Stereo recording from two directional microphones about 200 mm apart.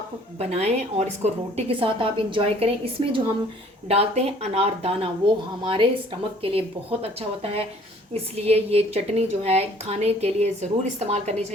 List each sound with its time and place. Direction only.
0.3 s a woman's voice: 30° right (ahead or behind)